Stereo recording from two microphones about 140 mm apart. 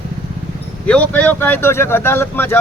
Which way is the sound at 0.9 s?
10° left (ahead or behind).